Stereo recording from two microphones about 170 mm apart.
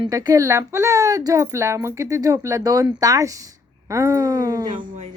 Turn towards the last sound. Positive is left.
turn(degrees=-25)  # may be behind; listen again after turning